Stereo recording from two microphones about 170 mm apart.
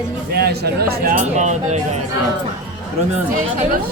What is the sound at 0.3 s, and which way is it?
Speech, 70° right (ahead or behind).